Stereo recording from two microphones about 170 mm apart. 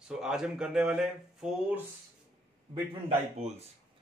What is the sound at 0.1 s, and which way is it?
Speech, 5° right (ahead or behind).